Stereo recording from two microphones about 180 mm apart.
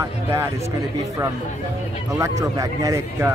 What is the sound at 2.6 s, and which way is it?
Speech, 20° right (ahead or behind).